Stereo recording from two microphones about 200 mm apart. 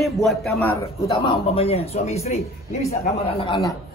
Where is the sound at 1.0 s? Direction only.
25° left (ahead or behind).